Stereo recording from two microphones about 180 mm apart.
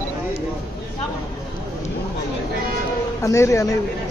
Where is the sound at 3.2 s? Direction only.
15° left (ahead or behind).